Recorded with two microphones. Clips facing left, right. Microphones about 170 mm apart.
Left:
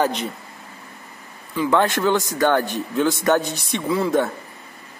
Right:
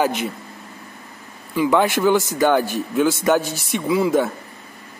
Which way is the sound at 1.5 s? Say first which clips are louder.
Right 2 dB; 10° right (ahead or behind).